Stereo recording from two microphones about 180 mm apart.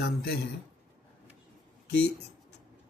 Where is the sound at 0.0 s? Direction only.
70° left (ahead or behind).